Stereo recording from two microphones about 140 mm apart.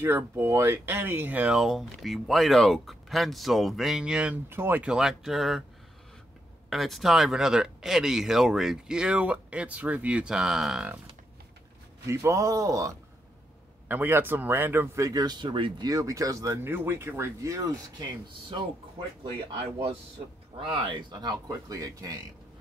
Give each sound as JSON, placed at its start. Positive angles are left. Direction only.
{"t": 0.0, "sound": "speech", "side_deg": -15}
{"t": 6.7, "sound": "speech", "side_deg": 0}
{"t": 12.1, "sound": "speech", "side_deg": -20}
{"t": 20.7, "sound": "speech", "side_deg": -35}